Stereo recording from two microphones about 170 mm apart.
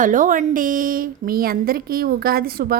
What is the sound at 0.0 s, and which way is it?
Speech, 50° right (ahead or behind).